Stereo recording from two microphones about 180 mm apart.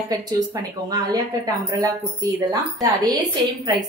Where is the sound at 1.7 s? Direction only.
15° right (ahead or behind).